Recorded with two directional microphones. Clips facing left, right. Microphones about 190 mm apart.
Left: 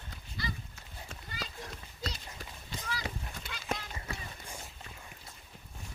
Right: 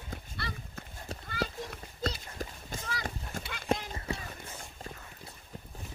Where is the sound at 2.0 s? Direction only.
50° right (ahead or behind).